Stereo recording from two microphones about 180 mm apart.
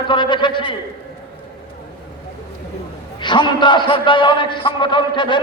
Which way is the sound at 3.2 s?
25° left (ahead or behind).